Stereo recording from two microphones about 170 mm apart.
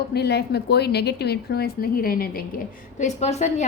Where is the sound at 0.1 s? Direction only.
70° left (ahead or behind).